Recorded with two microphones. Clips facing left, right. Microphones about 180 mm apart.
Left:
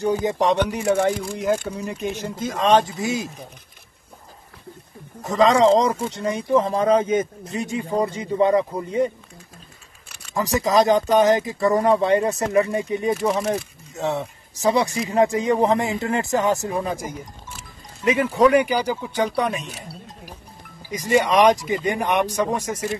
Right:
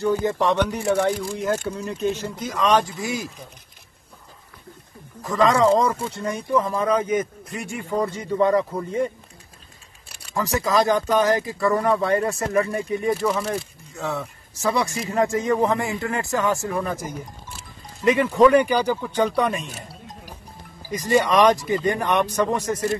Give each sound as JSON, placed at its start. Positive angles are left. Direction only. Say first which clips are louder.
{"t": 0.0, "sound": "speech", "louder": "left 1 dB", "side_deg": 20}
{"t": 2.3, "sound": "speech", "louder": "left 4 dB", "side_deg": 25}
{"t": 5.4, "sound": "speech", "louder": "left 2 dB", "side_deg": 25}
{"t": 10.0, "sound": "a sound", "louder": "right 1 dB", "side_deg": -35}
{"t": 10.3, "sound": "speech", "louder": "left 2 dB", "side_deg": 15}
{"t": 20.9, "sound": "speech", "louder": "even", "side_deg": 15}